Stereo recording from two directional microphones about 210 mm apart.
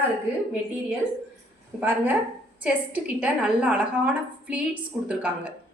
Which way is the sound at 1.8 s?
10° right (ahead or behind).